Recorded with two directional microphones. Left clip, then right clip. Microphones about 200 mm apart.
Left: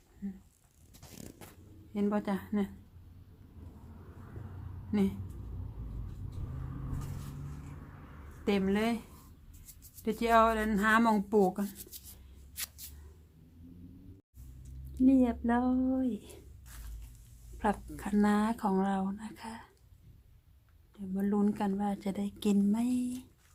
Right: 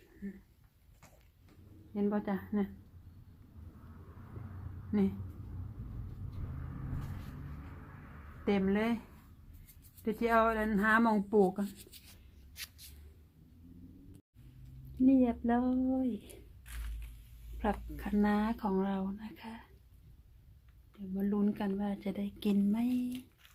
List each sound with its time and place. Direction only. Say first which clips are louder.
1.9 s speech: left 2 dB; centre (ahead or behind)
4.9 s a woman's voice: left 1 dB; 5° right (ahead or behind)
8.4 s speech: left 1 dB; 10° right (ahead or behind)
10.0 s speech: left 3 dB; 10° right (ahead or behind)
12.5 s a sound: left 3 dB; 20° left (ahead or behind)
14.9 s speech: left 1 dB; centre (ahead or behind)
17.6 s speech: left 3 dB; 5° left (ahead or behind)
21.2 s a woman's voice: left 3 dB; 5° left (ahead or behind)